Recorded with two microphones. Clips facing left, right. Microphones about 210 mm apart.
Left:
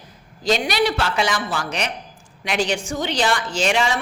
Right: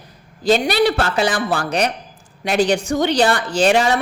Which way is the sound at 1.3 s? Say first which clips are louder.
Right 5 dB; 55° right (ahead or behind).